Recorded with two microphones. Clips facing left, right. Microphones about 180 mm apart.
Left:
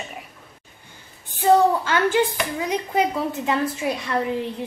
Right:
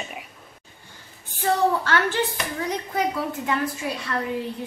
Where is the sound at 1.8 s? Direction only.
15° left (ahead or behind).